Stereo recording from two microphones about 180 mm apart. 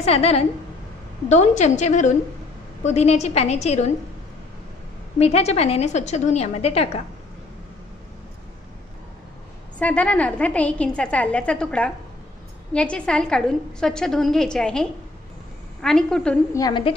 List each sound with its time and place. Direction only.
0.0 s a woman's voice: 35° left (ahead or behind)
5.2 s a woman's voice: 35° left (ahead or behind)
9.8 s a woman's voice: 5° left (ahead or behind)
16.5 s a woman's voice: 25° left (ahead or behind)